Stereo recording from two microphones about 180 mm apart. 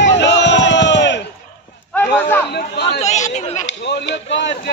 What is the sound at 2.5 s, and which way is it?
Speech, 65° left (ahead or behind).